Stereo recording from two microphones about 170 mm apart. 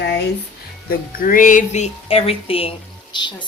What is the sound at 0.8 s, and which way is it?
A woman's voice, 55° left (ahead or behind).